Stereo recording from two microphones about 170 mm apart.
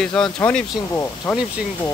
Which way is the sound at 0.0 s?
5° left (ahead or behind).